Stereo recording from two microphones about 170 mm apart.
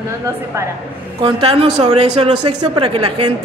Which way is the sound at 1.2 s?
35° right (ahead or behind).